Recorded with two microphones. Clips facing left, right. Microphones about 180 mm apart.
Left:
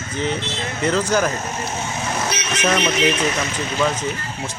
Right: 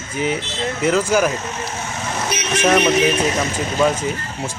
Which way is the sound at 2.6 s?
10° right (ahead or behind).